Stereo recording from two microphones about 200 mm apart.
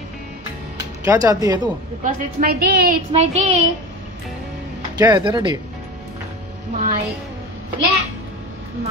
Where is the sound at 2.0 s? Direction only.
45° right (ahead or behind).